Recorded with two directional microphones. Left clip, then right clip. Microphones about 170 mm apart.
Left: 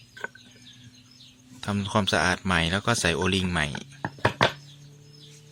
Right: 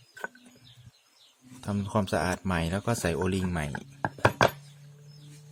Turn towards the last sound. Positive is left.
turn(degrees=-15)  # may be behind; listen again after turning